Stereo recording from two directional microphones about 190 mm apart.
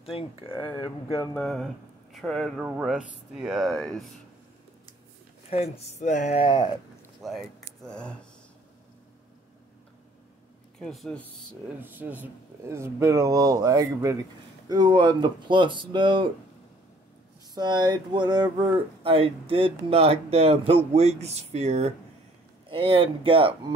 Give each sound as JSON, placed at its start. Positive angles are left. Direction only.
{"t": 0.0, "sound": "speech", "side_deg": 30}
{"t": 1.3, "sound": "speech", "side_deg": 5}
{"t": 5.5, "sound": "speech", "side_deg": 35}
{"t": 7.2, "sound": "speech", "side_deg": 0}
{"t": 10.8, "sound": "speech", "side_deg": 0}
{"t": 11.8, "sound": "speech", "side_deg": -10}
{"t": 17.6, "sound": "speech", "side_deg": -20}